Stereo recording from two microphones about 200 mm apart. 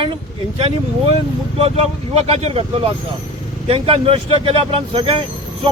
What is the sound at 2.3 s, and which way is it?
Speech, 30° right (ahead or behind).